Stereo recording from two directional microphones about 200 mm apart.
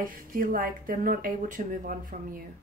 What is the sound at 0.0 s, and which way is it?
Speech, 45° right (ahead or behind).